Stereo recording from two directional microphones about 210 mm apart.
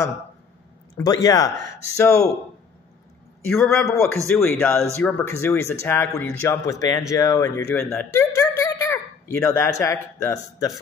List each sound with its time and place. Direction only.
0.9 s speech: 15° left (ahead or behind)
3.6 s a man's voice: centre (ahead or behind)
4.4 s speech: 10° left (ahead or behind)